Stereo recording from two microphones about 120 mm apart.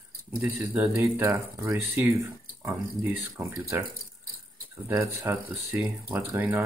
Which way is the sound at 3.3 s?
25° right (ahead or behind).